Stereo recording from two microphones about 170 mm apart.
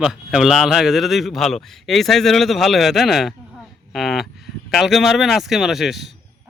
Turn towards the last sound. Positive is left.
turn(degrees=0)  # may be behind; listen again after turning